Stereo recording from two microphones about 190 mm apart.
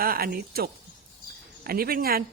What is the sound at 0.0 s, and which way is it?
Speech, 50° right (ahead or behind).